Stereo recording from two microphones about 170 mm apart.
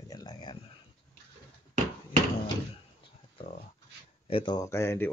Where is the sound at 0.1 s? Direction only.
25° left (ahead or behind).